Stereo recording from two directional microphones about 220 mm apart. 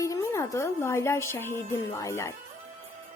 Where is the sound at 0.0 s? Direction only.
15° left (ahead or behind).